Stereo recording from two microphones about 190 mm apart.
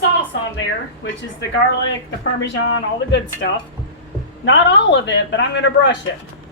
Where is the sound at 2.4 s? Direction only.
70° left (ahead or behind).